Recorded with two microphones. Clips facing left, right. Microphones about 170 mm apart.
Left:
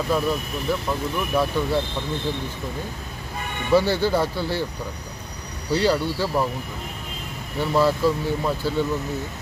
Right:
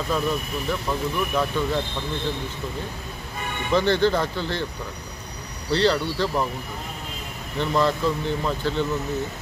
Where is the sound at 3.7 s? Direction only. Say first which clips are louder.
Left 1 dB; 10° left (ahead or behind).